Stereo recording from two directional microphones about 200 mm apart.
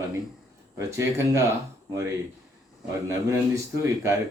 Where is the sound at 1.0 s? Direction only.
15° right (ahead or behind).